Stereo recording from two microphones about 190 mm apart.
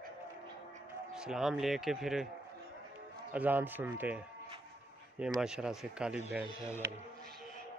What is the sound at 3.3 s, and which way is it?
Speech, 10° right (ahead or behind).